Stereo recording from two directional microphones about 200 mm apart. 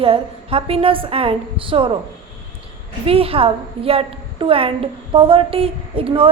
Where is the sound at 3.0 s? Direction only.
30° right (ahead or behind).